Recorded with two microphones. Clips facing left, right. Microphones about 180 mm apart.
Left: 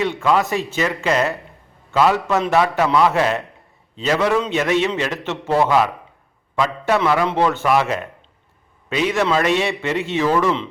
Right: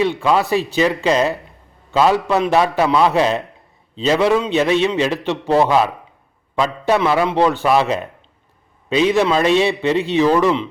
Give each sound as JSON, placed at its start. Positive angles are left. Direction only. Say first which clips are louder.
{"t": 0.0, "sound": "a man's voice", "louder": "right 2 dB", "side_deg": -15}